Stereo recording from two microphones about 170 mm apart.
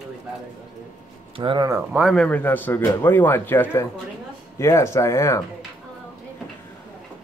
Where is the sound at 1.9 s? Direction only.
5° right (ahead or behind).